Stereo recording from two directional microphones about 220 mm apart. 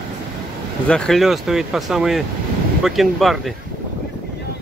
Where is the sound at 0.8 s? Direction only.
5° left (ahead or behind).